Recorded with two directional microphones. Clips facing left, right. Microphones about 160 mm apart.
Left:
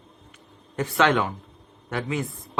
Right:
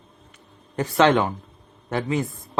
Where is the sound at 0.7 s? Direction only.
35° right (ahead or behind).